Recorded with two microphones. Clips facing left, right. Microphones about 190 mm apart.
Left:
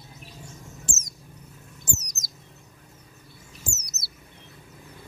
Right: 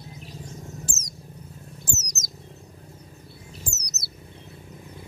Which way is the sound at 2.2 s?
20° right (ahead or behind).